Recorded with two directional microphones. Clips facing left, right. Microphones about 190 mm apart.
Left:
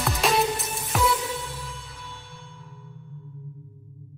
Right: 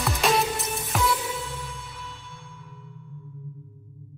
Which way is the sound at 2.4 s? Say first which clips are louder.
Even; 30° left (ahead or behind).